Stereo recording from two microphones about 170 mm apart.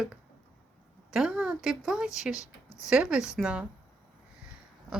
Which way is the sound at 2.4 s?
20° left (ahead or behind).